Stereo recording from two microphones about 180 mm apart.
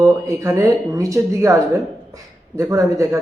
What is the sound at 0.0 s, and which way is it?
Speech, 15° right (ahead or behind).